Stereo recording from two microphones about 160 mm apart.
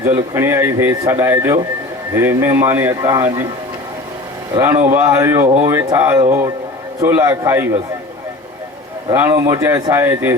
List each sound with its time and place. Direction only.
0.0 s speech: 15° right (ahead or behind)
4.5 s speech: 15° right (ahead or behind)
9.1 s speech: 15° right (ahead or behind)